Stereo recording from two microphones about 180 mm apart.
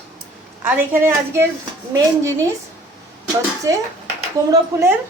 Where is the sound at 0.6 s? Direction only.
10° right (ahead or behind).